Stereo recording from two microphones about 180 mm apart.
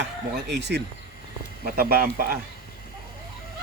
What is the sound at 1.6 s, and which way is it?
Speech, 55° right (ahead or behind).